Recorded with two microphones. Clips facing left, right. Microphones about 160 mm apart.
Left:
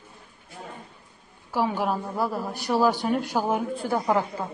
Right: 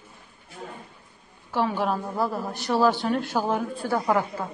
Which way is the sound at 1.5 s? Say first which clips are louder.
Even; 10° left (ahead or behind).